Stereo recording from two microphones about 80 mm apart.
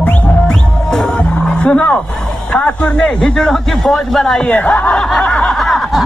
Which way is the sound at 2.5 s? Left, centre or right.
Centre.